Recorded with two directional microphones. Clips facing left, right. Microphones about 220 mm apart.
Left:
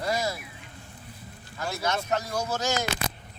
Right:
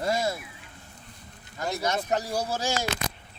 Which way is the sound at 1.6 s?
20° right (ahead or behind).